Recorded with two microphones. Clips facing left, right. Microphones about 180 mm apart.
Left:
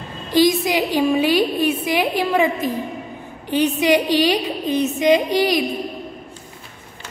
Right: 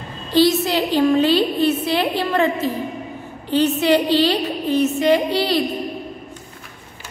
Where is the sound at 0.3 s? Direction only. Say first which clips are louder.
Even; 15° left (ahead or behind).